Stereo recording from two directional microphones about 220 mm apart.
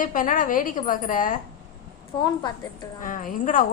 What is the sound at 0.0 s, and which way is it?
A woman's voice, 35° left (ahead or behind).